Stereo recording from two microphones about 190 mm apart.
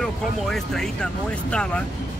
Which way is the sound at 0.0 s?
5° left (ahead or behind).